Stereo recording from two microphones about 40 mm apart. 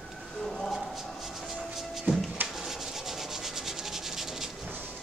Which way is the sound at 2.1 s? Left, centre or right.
Right.